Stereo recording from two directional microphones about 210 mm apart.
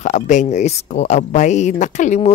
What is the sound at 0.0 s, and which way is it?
Speech, 35° left (ahead or behind).